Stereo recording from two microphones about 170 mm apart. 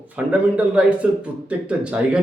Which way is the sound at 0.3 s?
5° right (ahead or behind).